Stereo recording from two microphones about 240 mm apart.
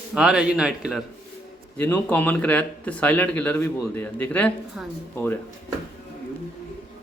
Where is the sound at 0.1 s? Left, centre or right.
Centre.